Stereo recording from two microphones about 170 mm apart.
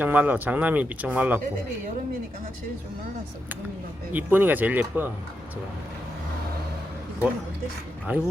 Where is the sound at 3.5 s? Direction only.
10° right (ahead or behind).